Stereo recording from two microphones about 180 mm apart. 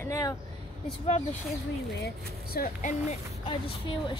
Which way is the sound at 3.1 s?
30° left (ahead or behind).